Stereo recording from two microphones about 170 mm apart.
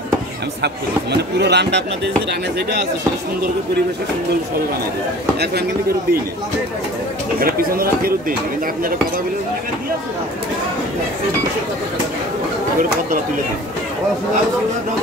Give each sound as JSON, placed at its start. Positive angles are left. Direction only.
{"t": 1.1, "sound": "speech", "side_deg": -80}
{"t": 7.3, "sound": "speech", "side_deg": -60}